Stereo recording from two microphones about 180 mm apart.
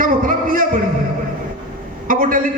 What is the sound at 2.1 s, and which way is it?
Speech, 50° right (ahead or behind).